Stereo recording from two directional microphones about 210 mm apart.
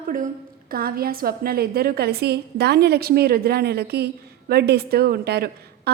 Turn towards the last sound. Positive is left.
turn(degrees=-50)  # may be behind; listen again after turning